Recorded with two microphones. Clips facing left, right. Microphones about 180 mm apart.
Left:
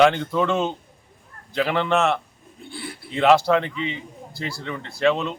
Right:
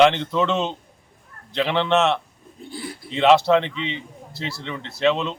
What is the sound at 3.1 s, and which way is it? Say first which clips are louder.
A man's voice: right 1 dB; centre (ahead or behind).